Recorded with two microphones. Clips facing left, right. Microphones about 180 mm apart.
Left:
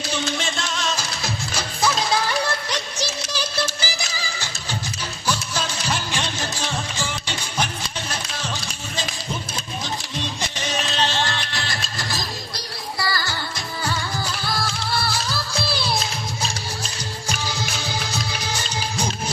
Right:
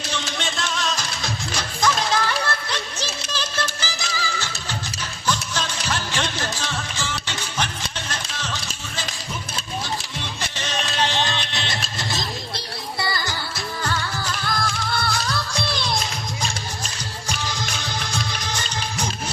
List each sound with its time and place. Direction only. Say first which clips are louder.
0.1 s music: left 3 dB; centre (ahead or behind)
10.6 s music: left 1 dB; 10° left (ahead or behind)
10.9 s music: right 2 dB; 15° right (ahead or behind)
14.4 s music: right 1 dB; 5° left (ahead or behind)
17.2 s music: left 1 dB; 10° left (ahead or behind)